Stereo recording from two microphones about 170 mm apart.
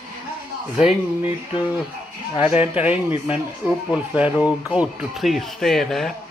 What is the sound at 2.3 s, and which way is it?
Speech, 35° left (ahead or behind).